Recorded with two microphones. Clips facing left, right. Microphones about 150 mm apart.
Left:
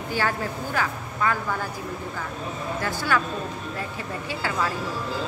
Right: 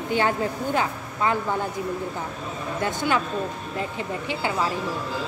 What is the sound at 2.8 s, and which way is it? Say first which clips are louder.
A woman's voice: right 2 dB; 20° right (ahead or behind).